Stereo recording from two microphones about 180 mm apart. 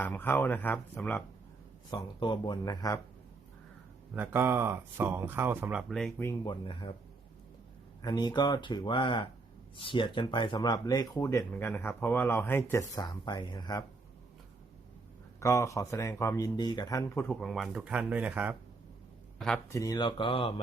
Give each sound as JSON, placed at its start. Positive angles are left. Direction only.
{"t": 0.0, "sound": "a man's voice", "side_deg": 10}
{"t": 1.9, "sound": "speech", "side_deg": 25}
{"t": 4.1, "sound": "speech", "side_deg": -10}
{"t": 5.9, "sound": "speech", "side_deg": 5}
{"t": 6.2, "sound": "speech", "side_deg": 25}
{"t": 8.0, "sound": "speech", "side_deg": 25}
{"t": 15.4, "sound": "a man's voice", "side_deg": 15}
{"t": 19.7, "sound": "speech", "side_deg": 20}